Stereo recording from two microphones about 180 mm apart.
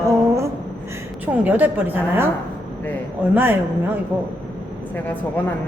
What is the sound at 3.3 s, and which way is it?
Speech, 10° right (ahead or behind).